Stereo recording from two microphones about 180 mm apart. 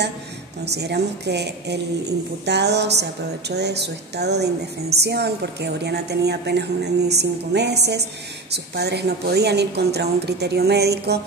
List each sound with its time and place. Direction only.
0.7 s a woman's voice: 65° right (ahead or behind)